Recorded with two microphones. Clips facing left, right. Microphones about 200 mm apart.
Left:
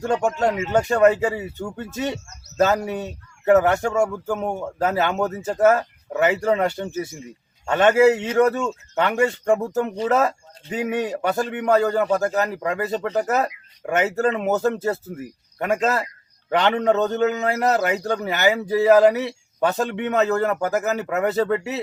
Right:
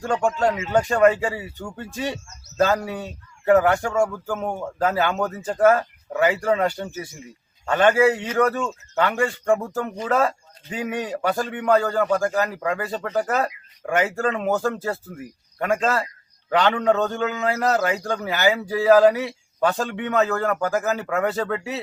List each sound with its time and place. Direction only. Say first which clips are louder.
0.0 s a man's voice: left 1 dB; 20° left (ahead or behind)
2.6 s a man's voice: left 1 dB; 20° left (ahead or behind)